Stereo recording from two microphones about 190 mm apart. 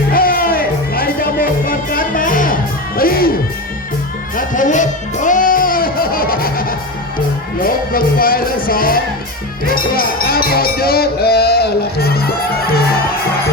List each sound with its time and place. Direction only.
0.1 s music: 50° left (ahead or behind)
4.4 s music: 45° left (ahead or behind)